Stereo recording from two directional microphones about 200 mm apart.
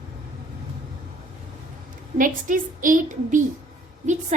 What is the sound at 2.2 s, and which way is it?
A woman's voice, 40° right (ahead or behind).